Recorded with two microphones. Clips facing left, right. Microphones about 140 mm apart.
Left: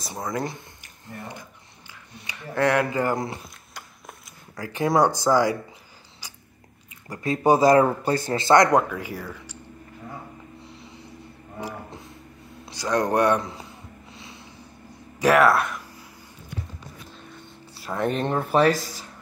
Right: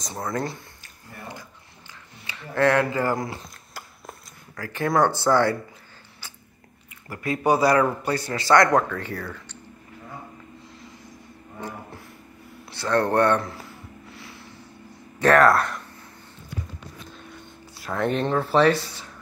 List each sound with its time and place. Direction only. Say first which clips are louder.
0.0 s speech: even; 15° left (ahead or behind)
2.2 s speech: right 2 dB; 15° left (ahead or behind)
4.6 s speech: left 1 dB; 15° left (ahead or behind)
7.1 s speech: left 2 dB; 25° left (ahead or behind)
10.6 s a sound: left 1 dB; 65° left (ahead or behind)
12.6 s a sound: right 1 dB; 15° left (ahead or behind)
15.1 s speech: right 1 dB; 10° left (ahead or behind)
17.8 s speech: even; 5° left (ahead or behind)
18.2 s speech: right 1 dB; 15° left (ahead or behind)
18.5 s speech: even; 45° left (ahead or behind)